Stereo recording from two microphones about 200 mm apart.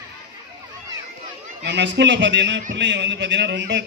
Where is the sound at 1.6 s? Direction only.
60° right (ahead or behind).